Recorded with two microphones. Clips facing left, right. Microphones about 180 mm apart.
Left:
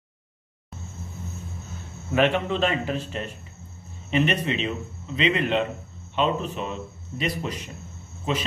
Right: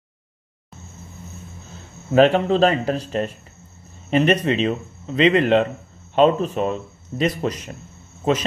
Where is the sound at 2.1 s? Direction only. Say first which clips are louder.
Right 7 dB; 35° right (ahead or behind).